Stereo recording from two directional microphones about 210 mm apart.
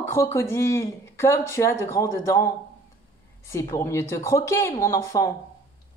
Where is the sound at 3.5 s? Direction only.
15° left (ahead or behind).